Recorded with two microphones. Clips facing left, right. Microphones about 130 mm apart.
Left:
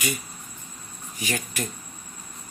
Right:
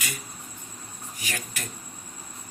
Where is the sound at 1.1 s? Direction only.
25° left (ahead or behind).